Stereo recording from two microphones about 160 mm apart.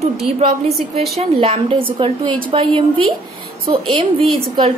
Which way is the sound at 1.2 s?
35° right (ahead or behind).